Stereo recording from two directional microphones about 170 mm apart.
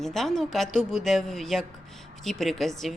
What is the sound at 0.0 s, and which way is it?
Speech, centre (ahead or behind).